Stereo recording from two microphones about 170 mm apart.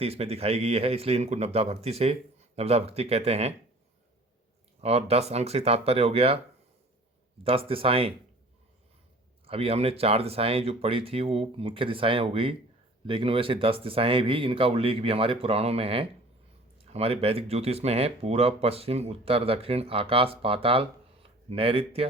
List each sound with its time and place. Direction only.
0.0 s speech: 35° right (ahead or behind)
4.8 s speech: 40° right (ahead or behind)
7.4 s speech: 35° right (ahead or behind)
9.5 s speech: 35° right (ahead or behind)